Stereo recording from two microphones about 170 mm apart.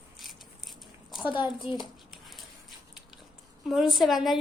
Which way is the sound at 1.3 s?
25° left (ahead or behind).